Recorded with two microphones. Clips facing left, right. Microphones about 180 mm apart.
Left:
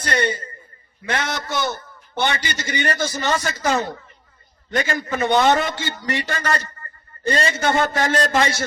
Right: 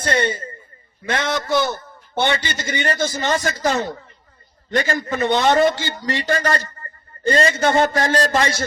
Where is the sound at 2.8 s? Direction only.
25° right (ahead or behind).